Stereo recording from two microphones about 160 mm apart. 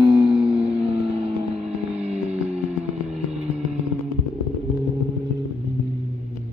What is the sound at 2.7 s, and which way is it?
Motorcycle, 45° right (ahead or behind).